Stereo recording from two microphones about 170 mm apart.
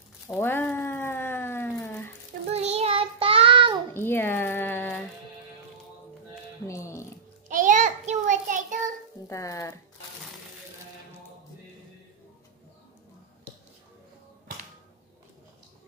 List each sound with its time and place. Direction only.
0.4 s a sound: 10° left (ahead or behind)
2.5 s child singing: 35° right (ahead or behind)
3.9 s a sound: 15° left (ahead or behind)
6.7 s music: 15° left (ahead or behind)
7.4 s child singing: 50° right (ahead or behind)
9.3 s speech: 20° left (ahead or behind)